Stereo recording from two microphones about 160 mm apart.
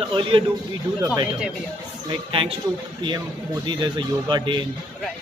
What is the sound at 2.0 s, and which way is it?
Speech, 35° right (ahead or behind).